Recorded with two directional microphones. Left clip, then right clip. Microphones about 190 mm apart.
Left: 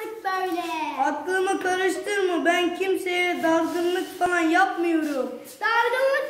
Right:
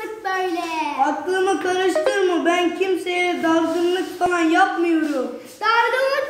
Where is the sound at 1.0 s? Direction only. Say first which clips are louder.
Right 4 dB; 20° left (ahead or behind).